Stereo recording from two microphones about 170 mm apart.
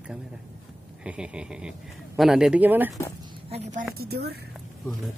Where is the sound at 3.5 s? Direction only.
40° right (ahead or behind).